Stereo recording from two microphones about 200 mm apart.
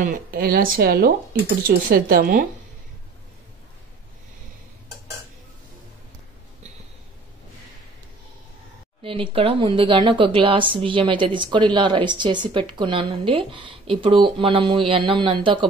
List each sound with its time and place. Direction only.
0.0 s speech: 45° right (ahead or behind)
9.0 s speech: 25° right (ahead or behind)